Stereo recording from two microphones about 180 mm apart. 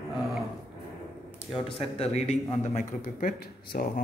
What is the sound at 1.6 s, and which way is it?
A man's voice, 35° left (ahead or behind).